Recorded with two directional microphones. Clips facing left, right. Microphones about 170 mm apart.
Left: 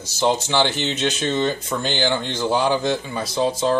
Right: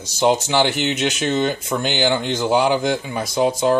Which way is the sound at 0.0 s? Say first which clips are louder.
Right 3 dB; 15° right (ahead or behind).